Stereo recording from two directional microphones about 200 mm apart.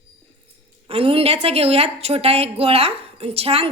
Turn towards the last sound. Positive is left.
turn(degrees=-30)  # may be behind; listen again after turning